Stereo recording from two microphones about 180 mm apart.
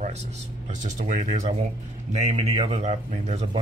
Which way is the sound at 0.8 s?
45° right (ahead or behind).